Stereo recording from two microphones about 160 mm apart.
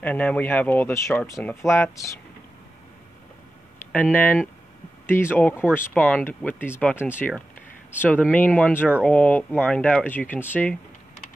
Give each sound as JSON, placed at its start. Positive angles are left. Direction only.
{"t": 0.0, "sound": "speech", "side_deg": 10}
{"t": 3.9, "sound": "speech", "side_deg": 10}